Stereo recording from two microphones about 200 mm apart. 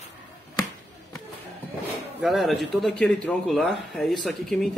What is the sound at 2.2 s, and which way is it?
Speech, centre (ahead or behind).